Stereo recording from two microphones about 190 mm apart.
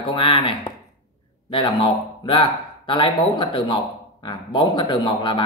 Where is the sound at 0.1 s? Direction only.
30° left (ahead or behind).